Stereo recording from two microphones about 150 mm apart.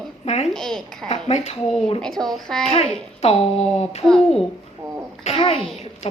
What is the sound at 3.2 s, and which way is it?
Speech, 45° left (ahead or behind).